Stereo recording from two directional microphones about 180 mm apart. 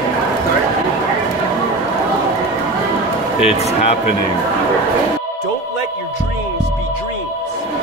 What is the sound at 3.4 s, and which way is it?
Speech, 35° left (ahead or behind).